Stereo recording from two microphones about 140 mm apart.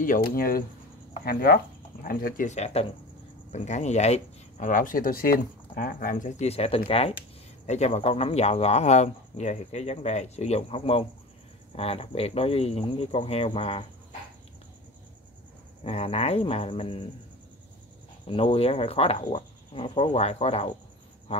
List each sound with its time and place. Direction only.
0.0 s speech: 85° left
2.5 s speech: 45° left (ahead or behind)
7.6 s speech: 55° left (ahead or behind)
15.8 s speech: 45° left (ahead or behind)
18.3 s speech: 45° left (ahead or behind)